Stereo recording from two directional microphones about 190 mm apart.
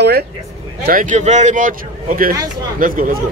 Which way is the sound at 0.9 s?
45° right (ahead or behind).